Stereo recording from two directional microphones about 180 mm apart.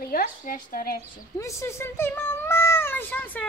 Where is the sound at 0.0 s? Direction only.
55° left (ahead or behind).